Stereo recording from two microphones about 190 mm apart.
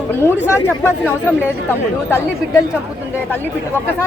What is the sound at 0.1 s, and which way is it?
Speech, 10° left (ahead or behind).